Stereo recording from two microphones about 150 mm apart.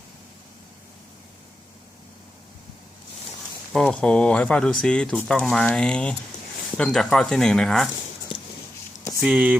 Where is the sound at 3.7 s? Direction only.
5° left (ahead or behind).